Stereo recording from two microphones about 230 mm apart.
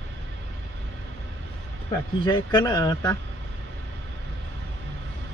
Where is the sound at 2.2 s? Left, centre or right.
Centre.